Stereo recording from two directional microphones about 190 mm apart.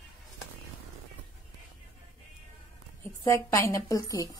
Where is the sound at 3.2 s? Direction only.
15° left (ahead or behind).